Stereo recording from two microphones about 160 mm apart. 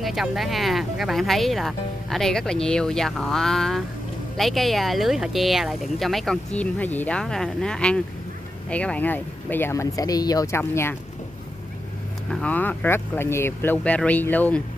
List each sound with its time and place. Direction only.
0.0 s speech: centre (ahead or behind); by 11.0 s 15° left (ahead or behind)
12.3 s speech: 5° left (ahead or behind)